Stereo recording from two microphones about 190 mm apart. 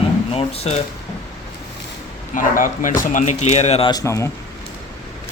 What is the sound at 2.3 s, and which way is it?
Speech, 45° left (ahead or behind).